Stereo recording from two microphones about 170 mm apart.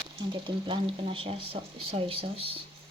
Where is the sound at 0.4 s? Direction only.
30° right (ahead or behind).